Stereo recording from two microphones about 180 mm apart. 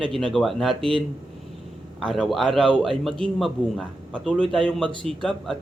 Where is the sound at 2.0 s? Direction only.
Centre (ahead or behind).